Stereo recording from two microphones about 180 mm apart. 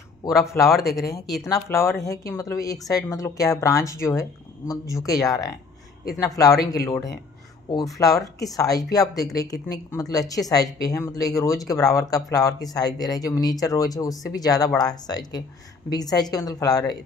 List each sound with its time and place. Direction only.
1.4 s speech: 15° left (ahead or behind)